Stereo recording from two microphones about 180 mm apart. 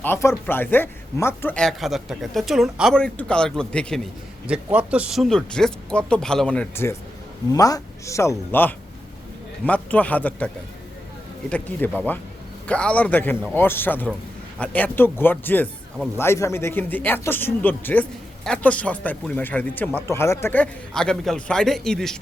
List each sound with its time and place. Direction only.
0.0 s speech: 15° left (ahead or behind)
4.4 s speech: 5° right (ahead or behind)